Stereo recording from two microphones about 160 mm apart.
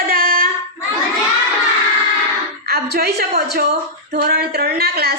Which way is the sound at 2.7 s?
75° right (ahead or behind).